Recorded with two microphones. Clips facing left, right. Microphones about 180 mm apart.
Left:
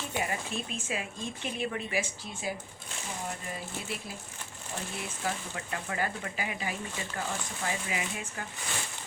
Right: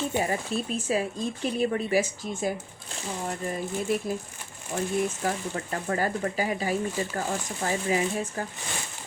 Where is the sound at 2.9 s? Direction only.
35° right (ahead or behind).